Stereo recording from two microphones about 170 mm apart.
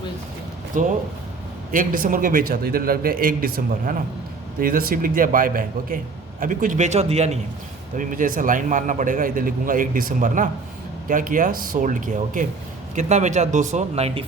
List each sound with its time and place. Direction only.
0.7 s a man's voice: 50° right (ahead or behind)
7.9 s a man's voice: 50° right (ahead or behind)